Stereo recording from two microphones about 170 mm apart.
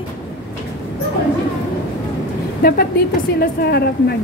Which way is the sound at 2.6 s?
65° left (ahead or behind).